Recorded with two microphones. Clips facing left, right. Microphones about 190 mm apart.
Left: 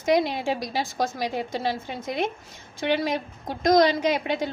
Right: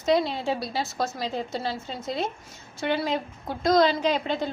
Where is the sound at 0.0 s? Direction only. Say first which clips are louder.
Left 1 dB; 15° left (ahead or behind).